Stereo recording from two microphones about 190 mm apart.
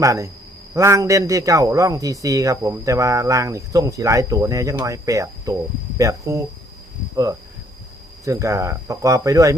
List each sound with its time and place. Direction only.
0.0 s a man's voice: 15° right (ahead or behind)
8.2 s a man's voice: 15° right (ahead or behind)